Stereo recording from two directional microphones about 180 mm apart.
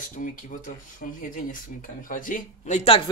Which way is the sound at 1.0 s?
50° left (ahead or behind).